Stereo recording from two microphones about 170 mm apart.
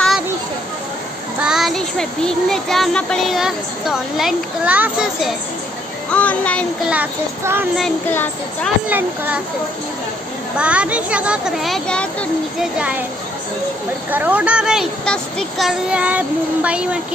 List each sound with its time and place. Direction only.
1.4 s child singing: centre (ahead or behind)
6.0 s a child's voice: 5° left (ahead or behind)
6.9 s speech: 10° right (ahead or behind)
8.1 s a child's voice: 10° left (ahead or behind)
8.8 s speech: 10° right (ahead or behind)
10.6 s speech: 5° right (ahead or behind)
12.7 s speech: 5° right (ahead or behind)
14.1 s speech: 10° right (ahead or behind)